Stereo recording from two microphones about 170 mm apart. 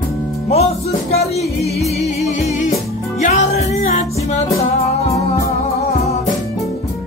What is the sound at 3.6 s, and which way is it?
Music, 40° left (ahead or behind).